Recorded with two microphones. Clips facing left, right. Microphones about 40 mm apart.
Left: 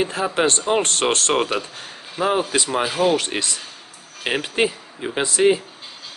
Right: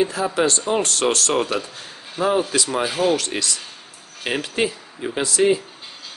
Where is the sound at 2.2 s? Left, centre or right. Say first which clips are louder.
Even; centre.